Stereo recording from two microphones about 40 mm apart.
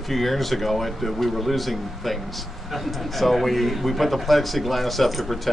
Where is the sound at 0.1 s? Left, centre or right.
Centre.